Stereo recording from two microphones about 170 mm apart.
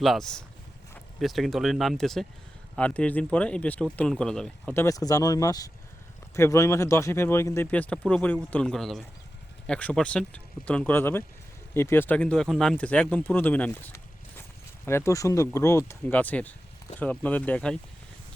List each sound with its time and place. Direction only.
0.0 s speech: centre (ahead or behind)